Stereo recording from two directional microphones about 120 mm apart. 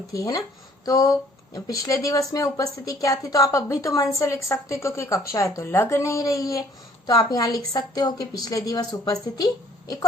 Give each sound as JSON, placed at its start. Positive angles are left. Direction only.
{"t": 0.1, "sound": "a woman's voice", "side_deg": 30}